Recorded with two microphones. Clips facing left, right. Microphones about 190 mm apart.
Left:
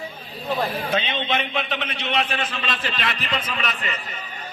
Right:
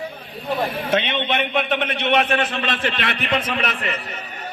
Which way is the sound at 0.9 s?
70° right (ahead or behind).